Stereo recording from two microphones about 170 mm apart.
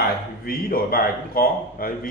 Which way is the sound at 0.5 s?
60° left (ahead or behind).